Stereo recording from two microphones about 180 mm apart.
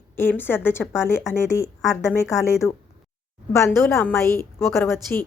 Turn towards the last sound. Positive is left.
turn(degrees=15)  # may be behind; listen again after turning